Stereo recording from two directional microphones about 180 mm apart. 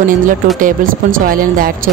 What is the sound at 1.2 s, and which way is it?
Speech, 50° right (ahead or behind).